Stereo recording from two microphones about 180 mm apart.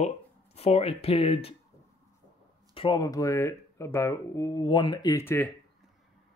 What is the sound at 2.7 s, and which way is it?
Speech, 25° left (ahead or behind).